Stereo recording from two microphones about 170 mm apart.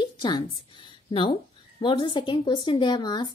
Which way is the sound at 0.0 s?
25° left (ahead or behind).